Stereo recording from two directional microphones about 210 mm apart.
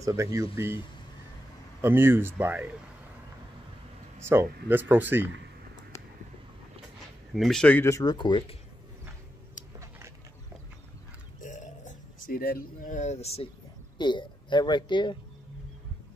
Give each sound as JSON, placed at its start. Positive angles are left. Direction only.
{"t": 0.0, "sound": "speech", "side_deg": -15}
{"t": 1.8, "sound": "speech", "side_deg": -10}
{"t": 4.2, "sound": "speech", "side_deg": -10}
{"t": 7.3, "sound": "speech", "side_deg": 0}
{"t": 9.8, "sound": "a sound", "side_deg": -10}
{"t": 11.4, "sound": "a sound", "side_deg": 35}
{"t": 13.9, "sound": "speech", "side_deg": 20}